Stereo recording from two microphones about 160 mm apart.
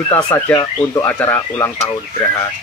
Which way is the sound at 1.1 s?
15° left (ahead or behind).